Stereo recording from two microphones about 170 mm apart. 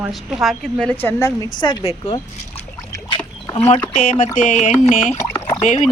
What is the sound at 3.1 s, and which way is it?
Rowboat, 30° left (ahead or behind).